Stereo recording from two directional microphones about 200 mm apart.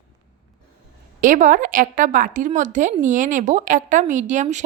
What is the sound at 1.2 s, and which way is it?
Speech, 40° right (ahead or behind).